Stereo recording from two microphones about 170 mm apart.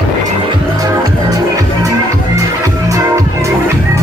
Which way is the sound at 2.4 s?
20° right (ahead or behind).